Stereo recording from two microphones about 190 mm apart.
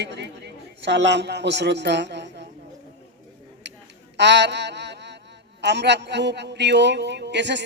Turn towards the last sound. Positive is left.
turn(degrees=-65)  # may be behind; listen again after turning